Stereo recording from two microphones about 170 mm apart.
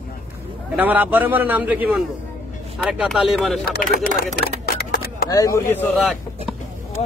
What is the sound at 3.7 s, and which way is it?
Speech, 65° left (ahead or behind).